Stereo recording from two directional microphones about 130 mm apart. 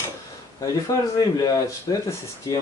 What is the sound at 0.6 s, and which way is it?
Speech, 30° left (ahead or behind).